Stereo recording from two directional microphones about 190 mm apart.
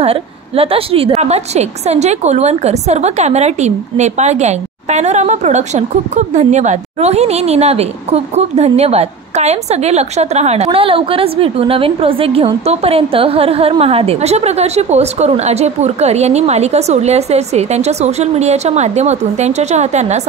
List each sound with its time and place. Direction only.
0.0 s a woman's voice: 30° right (ahead or behind)